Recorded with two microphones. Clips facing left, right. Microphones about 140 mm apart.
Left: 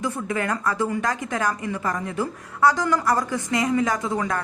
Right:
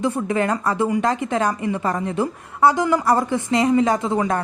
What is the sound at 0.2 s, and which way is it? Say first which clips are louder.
A woman's voice: right 5 dB; 30° right (ahead or behind).